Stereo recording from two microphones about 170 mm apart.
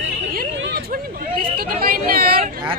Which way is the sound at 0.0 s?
75° right (ahead or behind).